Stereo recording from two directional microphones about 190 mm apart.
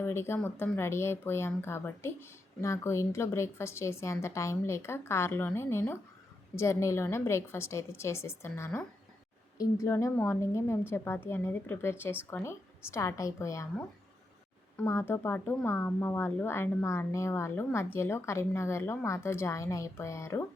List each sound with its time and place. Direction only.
0.0 s speech: 15° left (ahead or behind)
14.8 s speech: 10° left (ahead or behind)